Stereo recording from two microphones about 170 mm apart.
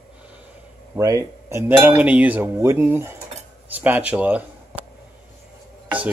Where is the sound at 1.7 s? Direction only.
10° right (ahead or behind).